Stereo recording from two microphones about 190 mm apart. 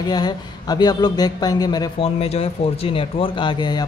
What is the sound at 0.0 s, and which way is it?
A man's voice, 20° left (ahead or behind).